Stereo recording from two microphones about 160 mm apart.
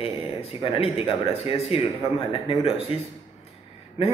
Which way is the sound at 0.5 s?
35° left (ahead or behind).